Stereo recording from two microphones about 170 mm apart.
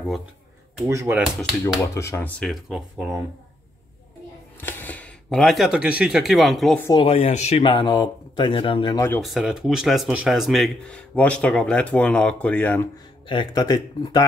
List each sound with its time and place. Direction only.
0.8 s speech: 15° right (ahead or behind)
1.8 s speech: 15° left (ahead or behind); by 3.2 s centre (ahead or behind)
4.6 s speech: 10° left (ahead or behind)
6.9 s speech: 30° left (ahead or behind)
9.2 s speech: centre (ahead or behind)
13.3 s speech: 25° left (ahead or behind)